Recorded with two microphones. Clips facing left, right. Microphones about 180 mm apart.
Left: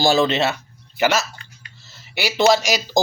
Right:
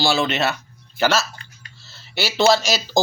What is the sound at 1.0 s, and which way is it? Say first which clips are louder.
Speech: even; 15° left (ahead or behind).